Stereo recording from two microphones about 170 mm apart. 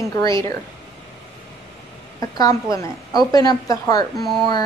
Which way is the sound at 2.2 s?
20° left (ahead or behind).